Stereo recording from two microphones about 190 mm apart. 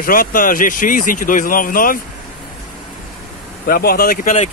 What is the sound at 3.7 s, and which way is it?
Speech, 50° left (ahead or behind).